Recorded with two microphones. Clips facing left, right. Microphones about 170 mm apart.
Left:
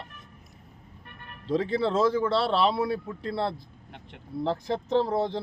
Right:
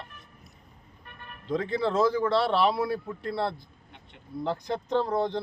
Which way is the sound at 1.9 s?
Centre (ahead or behind).